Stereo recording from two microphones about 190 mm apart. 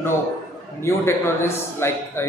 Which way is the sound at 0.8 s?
15° left (ahead or behind).